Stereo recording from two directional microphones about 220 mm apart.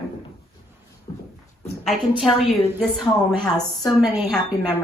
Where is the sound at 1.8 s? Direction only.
Centre (ahead or behind).